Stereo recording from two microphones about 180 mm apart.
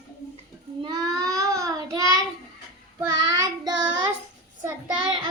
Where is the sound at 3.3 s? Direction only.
25° right (ahead or behind).